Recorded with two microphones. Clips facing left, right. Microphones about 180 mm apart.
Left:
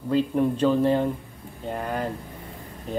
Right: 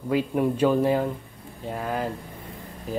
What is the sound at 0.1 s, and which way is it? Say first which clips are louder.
Speech: left 1 dB; 10° right (ahead or behind).